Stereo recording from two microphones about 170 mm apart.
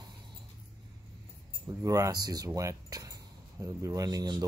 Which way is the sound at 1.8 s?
20° right (ahead or behind).